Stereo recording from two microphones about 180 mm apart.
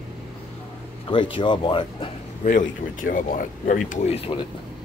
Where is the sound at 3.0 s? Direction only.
50° left (ahead or behind); by 4.3 s 35° left (ahead or behind).